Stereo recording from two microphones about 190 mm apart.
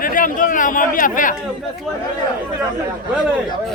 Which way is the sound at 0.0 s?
45° left (ahead or behind).